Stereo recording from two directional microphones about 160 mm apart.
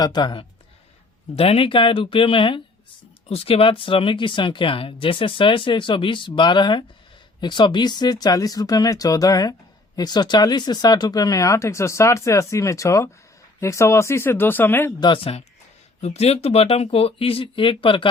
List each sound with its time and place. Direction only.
0.0 s speech: 25° left (ahead or behind)
15.0 s speech: 30° left (ahead or behind)